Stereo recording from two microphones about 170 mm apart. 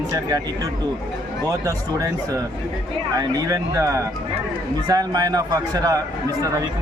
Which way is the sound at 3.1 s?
20° right (ahead or behind).